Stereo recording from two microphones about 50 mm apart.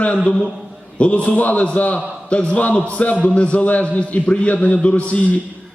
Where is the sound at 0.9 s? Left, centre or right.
Left.